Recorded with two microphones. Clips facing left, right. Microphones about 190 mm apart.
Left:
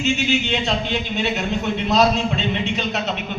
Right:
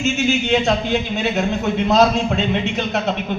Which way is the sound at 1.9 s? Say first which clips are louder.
Right 2 dB; 50° right (ahead or behind).